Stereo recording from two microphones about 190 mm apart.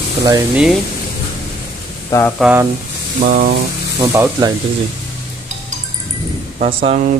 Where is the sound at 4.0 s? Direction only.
15° right (ahead or behind).